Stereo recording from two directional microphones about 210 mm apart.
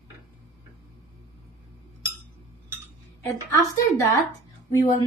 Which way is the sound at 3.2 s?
15° left (ahead or behind).